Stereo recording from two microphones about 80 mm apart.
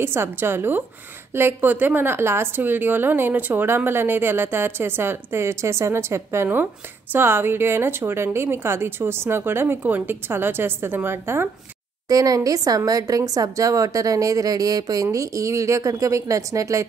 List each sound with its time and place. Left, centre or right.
0.0 s a woman's voice: right
12.1 s a woman's voice: right